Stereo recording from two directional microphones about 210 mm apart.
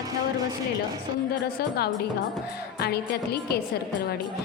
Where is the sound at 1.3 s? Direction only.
45° left (ahead or behind).